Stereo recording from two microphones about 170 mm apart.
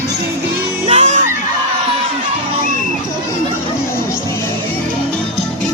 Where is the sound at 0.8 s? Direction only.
40° right (ahead or behind).